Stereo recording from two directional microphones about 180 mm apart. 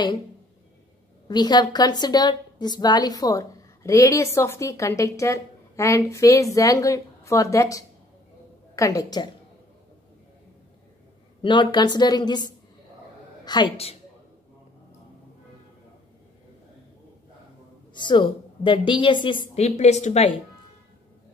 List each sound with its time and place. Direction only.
1.2 s a woman's voice: 25° left (ahead or behind)
11.4 s a woman's voice: 25° left (ahead or behind)
13.5 s a woman's voice: 30° left (ahead or behind)
17.9 s a woman's voice: 25° left (ahead or behind)